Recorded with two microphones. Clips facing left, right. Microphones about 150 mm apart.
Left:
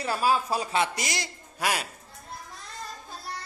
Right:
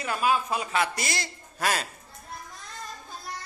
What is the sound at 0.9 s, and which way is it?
Speech, 15° left (ahead or behind).